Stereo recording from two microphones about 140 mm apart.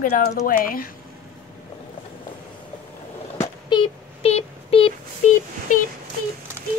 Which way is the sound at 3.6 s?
35° left (ahead or behind).